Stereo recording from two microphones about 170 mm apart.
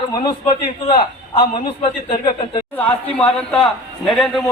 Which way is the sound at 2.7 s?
10° left (ahead or behind).